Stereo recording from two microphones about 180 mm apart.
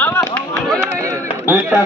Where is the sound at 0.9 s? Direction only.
15° right (ahead or behind).